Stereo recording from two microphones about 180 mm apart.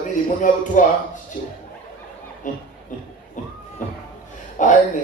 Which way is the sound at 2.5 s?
45° left (ahead or behind).